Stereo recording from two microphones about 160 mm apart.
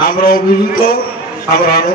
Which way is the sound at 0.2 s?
65° left (ahead or behind).